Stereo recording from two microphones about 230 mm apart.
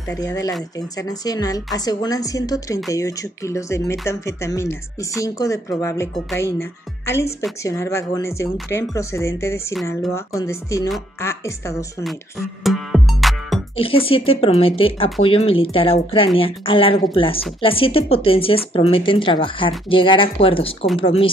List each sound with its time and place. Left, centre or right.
0.1 s speech: centre
12.6 s music: centre
13.7 s speech: left